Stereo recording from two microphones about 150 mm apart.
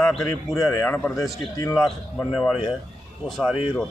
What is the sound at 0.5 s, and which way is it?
Speech, 20° left (ahead or behind).